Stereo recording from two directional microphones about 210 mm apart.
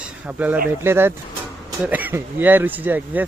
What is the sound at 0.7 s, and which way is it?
Speech, 10° right (ahead or behind).